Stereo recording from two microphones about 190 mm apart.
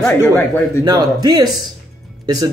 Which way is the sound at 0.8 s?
20° right (ahead or behind).